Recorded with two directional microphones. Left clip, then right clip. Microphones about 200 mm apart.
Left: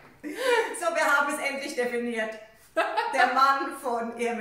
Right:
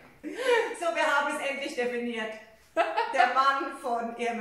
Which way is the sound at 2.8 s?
5° right (ahead or behind).